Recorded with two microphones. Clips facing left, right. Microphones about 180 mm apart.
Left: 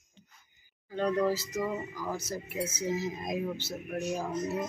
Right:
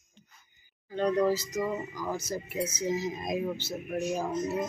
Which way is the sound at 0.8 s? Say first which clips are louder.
Right 2 dB; 5° left (ahead or behind).